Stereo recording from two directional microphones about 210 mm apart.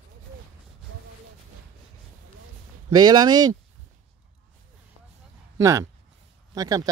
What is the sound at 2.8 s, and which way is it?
Speech, 20° right (ahead or behind).